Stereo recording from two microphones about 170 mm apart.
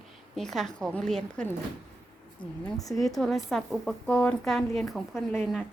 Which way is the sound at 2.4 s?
20° left (ahead or behind).